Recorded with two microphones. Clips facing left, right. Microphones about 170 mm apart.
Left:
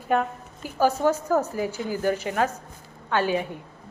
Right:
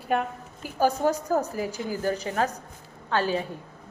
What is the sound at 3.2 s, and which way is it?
Speech, 15° left (ahead or behind).